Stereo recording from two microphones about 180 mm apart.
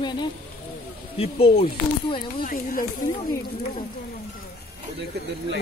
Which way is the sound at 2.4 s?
50° left (ahead or behind).